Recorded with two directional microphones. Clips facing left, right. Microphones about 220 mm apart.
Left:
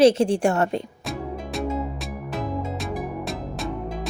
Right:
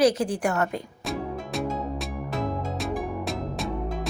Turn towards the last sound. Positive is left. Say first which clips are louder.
# even
turn(degrees=0)  # may be behind; listen again after turning